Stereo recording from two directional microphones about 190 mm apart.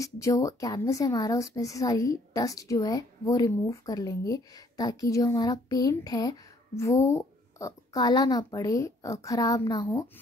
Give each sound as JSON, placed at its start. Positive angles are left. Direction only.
{"t": 0.0, "sound": "a woman's voice", "side_deg": 15}